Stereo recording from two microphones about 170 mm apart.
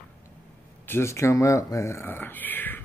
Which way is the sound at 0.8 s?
15° left (ahead or behind).